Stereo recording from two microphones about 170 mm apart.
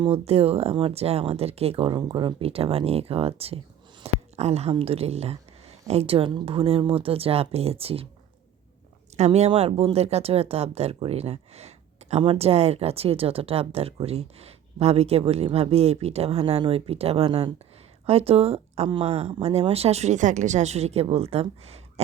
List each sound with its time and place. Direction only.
0.0 s speech: 35° right (ahead or behind)
9.1 s speech: 40° right (ahead or behind)